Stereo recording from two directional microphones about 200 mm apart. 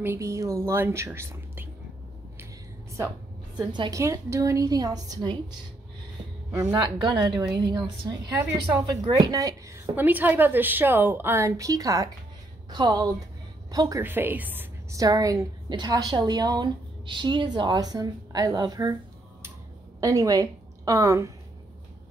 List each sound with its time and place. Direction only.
0.0 s a woman's voice: 15° right (ahead or behind)
3.5 s a woman's voice: 20° right (ahead or behind)
6.5 s a woman's voice: 20° right (ahead or behind)
20.0 s a woman's voice: 15° right (ahead or behind)